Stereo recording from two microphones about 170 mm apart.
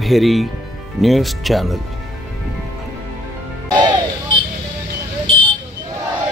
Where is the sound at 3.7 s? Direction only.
25° right (ahead or behind).